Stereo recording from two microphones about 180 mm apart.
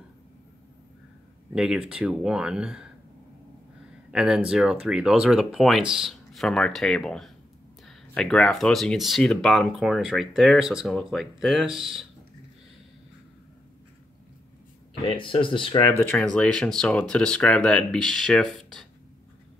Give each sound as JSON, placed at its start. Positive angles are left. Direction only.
{"t": 1.5, "sound": "speech", "side_deg": -5}
{"t": 4.1, "sound": "speech", "side_deg": -5}
{"t": 15.0, "sound": "speech", "side_deg": 30}
{"t": 16.0, "sound": "speech", "side_deg": 10}